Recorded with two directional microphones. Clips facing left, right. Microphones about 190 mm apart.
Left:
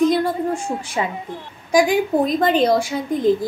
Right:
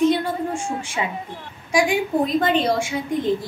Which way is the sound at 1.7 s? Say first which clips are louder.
Left 4 dB; 40° left (ahead or behind).